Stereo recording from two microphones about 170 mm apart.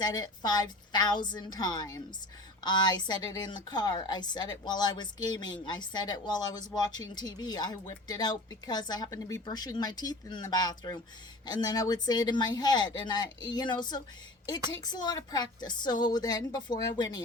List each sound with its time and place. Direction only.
0.0 s a woman's voice: 25° left (ahead or behind)